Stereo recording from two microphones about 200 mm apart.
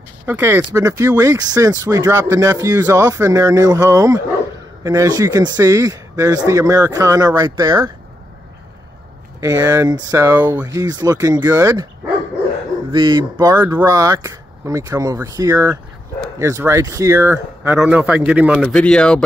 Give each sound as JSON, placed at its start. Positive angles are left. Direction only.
{"t": 0.3, "sound": "speech", "side_deg": -10}
{"t": 9.4, "sound": "speech", "side_deg": -20}
{"t": 12.9, "sound": "speech", "side_deg": -20}
{"t": 18.6, "sound": "speech", "side_deg": 5}